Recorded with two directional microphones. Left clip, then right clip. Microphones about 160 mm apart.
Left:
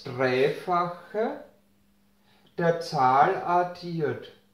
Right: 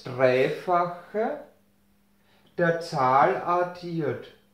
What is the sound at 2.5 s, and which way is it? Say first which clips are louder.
Speech: right 1 dB; centre (ahead or behind).